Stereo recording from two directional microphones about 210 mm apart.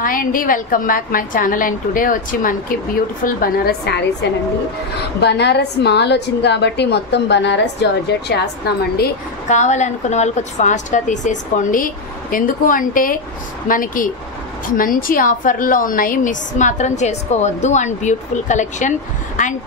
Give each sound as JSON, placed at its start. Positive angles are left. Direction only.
{"t": 0.0, "sound": "a woman's voice", "side_deg": 40}
{"t": 8.9, "sound": "a woman's voice", "side_deg": 40}